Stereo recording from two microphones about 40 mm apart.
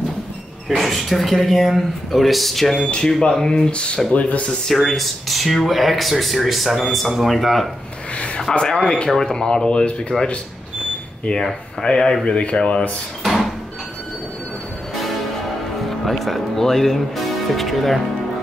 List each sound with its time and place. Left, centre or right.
0.7 s speech: centre; by 4.5 s left
4.6 s speech: centre
8.6 s speech: left
11.8 s speech: centre
12.3 s speech: left
13.2 s a sound: centre
15.9 s speech: centre